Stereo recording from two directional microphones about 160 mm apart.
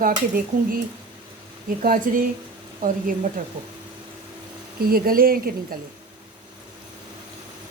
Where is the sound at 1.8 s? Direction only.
60° right (ahead or behind).